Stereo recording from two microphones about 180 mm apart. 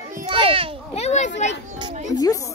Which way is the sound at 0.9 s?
40° left (ahead or behind).